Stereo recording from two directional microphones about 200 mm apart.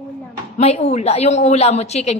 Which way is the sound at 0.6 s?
35° left (ahead or behind).